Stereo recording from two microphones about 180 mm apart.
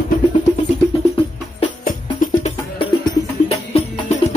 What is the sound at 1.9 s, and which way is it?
Music, 50° left (ahead or behind).